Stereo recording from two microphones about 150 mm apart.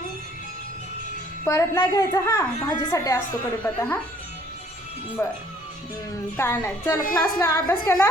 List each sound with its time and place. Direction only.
1.5 s a woman's voice: 20° left (ahead or behind)
3.6 s a woman's voice: 10° left (ahead or behind)
5.2 s a woman's voice: 15° left (ahead or behind)